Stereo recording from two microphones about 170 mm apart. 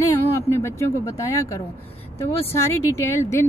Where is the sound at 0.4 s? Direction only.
15° left (ahead or behind).